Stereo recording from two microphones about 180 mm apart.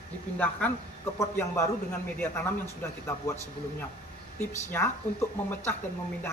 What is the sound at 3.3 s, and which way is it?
A man's voice, 15° left (ahead or behind).